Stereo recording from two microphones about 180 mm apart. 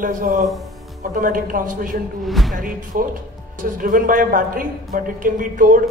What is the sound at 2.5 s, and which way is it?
A woman's voice, 50° right (ahead or behind).